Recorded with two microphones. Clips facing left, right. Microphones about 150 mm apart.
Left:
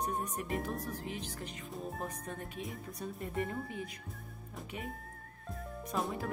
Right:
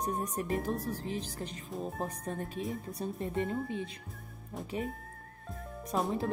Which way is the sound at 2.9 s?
30° right (ahead or behind).